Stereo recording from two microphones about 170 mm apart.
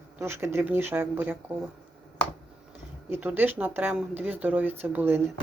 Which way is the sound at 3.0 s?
10° right (ahead or behind).